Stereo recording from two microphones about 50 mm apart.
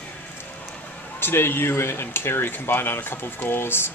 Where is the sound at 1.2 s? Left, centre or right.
Left.